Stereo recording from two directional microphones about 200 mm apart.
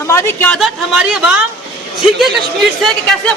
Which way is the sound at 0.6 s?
5° right (ahead or behind).